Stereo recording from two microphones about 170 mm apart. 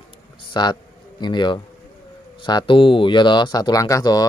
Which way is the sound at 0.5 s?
25° left (ahead or behind).